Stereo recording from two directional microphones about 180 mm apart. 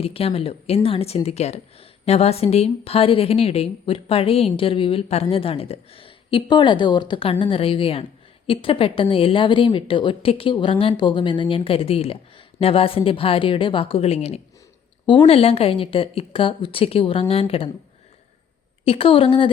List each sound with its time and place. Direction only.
0.0 s speech: 35° left (ahead or behind)
18.9 s speech: 30° left (ahead or behind)